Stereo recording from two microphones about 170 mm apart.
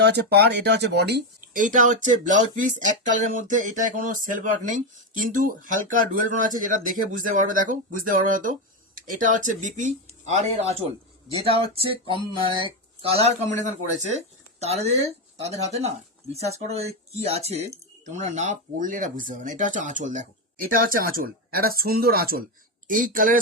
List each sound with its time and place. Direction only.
0.0 s speech: 75° right (ahead or behind)
1.5 s speech: 50° right (ahead or behind)